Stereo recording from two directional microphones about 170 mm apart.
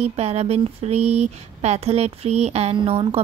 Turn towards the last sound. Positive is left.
turn(degrees=-35)  # may be behind; listen again after turning